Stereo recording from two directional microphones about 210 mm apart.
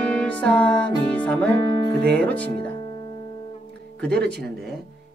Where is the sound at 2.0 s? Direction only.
5° left (ahead or behind).